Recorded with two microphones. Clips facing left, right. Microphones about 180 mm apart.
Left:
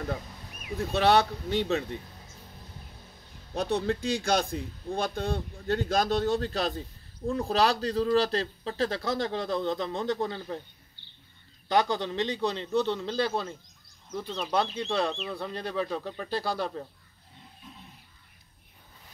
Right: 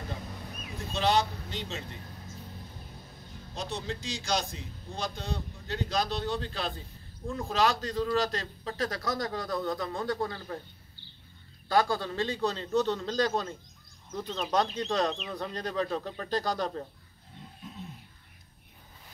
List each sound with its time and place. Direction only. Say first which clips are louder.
0.9 s speech: left 4 dB; 60° left (ahead or behind)
3.5 s a man's voice: left 8 dB; 60° left (ahead or behind); by 10.6 s 25° left (ahead or behind)
11.7 s a man's voice: left 1 dB; 20° left (ahead or behind)
14.1 s speech: left 1 dB; 5° right (ahead or behind)
14.8 s a man's voice: even; 10° left (ahead or behind)